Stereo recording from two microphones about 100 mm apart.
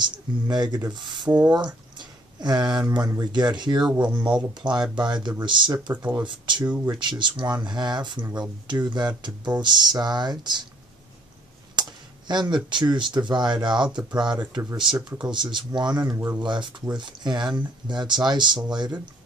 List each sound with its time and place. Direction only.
0.0 s speech: 45° right (ahead or behind)
1.5 s a sound: 45° right (ahead or behind)
2.9 s speech: 45° right (ahead or behind)
11.7 s speech: 50° right (ahead or behind)
16.3 s speech: 50° right (ahead or behind)